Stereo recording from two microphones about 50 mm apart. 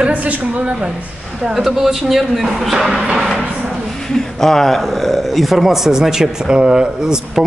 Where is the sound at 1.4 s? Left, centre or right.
Centre.